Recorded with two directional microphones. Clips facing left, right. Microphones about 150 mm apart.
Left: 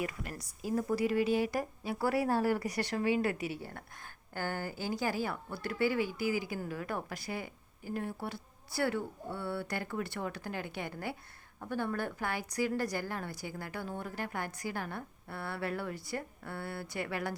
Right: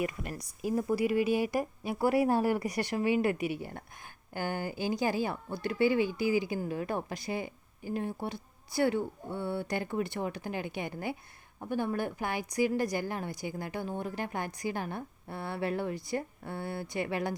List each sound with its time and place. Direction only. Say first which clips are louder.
0.0 s a woman's voice: right 4 dB; 20° right (ahead or behind)